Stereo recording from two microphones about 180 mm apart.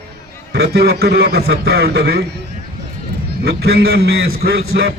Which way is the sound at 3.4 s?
65° right (ahead or behind).